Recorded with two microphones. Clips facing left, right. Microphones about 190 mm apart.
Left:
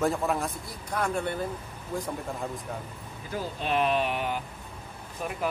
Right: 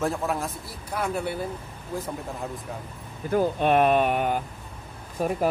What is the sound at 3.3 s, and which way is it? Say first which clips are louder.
Speech: right 9 dB; 55° right (ahead or behind).